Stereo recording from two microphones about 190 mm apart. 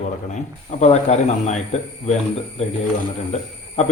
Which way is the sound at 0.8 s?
35° left (ahead or behind).